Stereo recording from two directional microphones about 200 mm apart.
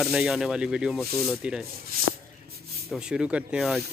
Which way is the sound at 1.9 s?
45° right (ahead or behind).